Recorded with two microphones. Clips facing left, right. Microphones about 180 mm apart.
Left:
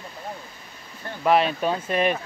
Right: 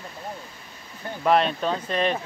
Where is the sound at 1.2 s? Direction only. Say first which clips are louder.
Left 1 dB; 5° left (ahead or behind).